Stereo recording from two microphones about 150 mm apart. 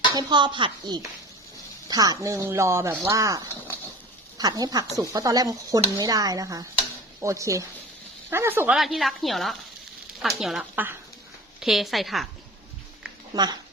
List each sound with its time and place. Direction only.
0.1 s speech: 30° right (ahead or behind); by 8.7 s 15° right (ahead or behind)
8.7 s speech: centre (ahead or behind)
13.3 s speech: 25° right (ahead or behind)